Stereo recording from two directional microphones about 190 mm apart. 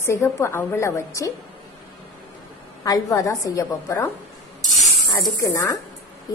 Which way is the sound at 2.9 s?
15° left (ahead or behind).